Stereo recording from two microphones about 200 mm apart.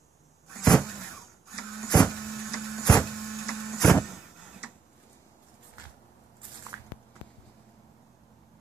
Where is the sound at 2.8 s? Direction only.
20° left (ahead or behind).